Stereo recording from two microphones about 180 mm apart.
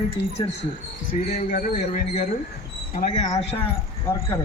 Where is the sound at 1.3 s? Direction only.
35° left (ahead or behind).